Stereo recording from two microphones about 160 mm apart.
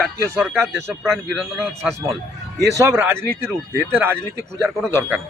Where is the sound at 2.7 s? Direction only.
15° right (ahead or behind).